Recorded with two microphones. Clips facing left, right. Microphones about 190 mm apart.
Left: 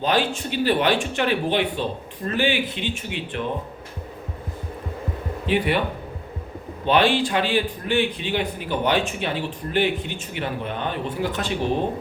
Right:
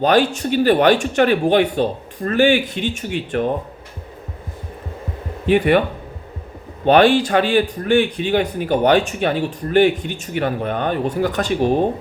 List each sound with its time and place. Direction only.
0.0 s a man's voice: 45° right (ahead or behind)
5.5 s a man's voice: 50° right (ahead or behind)
6.8 s a man's voice: 45° right (ahead or behind)